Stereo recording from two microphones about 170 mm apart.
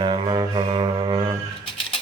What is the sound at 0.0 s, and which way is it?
Music, 25° right (ahead or behind).